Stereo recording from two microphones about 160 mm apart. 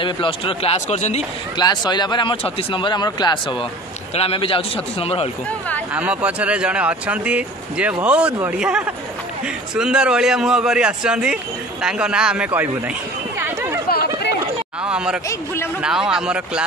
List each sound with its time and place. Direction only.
0.0 s speech: 35° left (ahead or behind)
1.6 s speech: 25° left (ahead or behind)
4.1 s speech: 35° left (ahead or behind)
5.9 s a man's voice: 10° right (ahead or behind)
13.4 s chatter: 15° right (ahead or behind)
13.8 s a sound: 80° left
14.8 s speech: 5° right (ahead or behind)
15.2 s speech: 15° left (ahead or behind)
15.8 s a man's voice: 5° right (ahead or behind)